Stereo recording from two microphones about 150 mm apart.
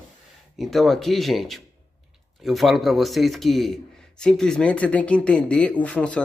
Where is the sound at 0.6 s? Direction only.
Centre (ahead or behind).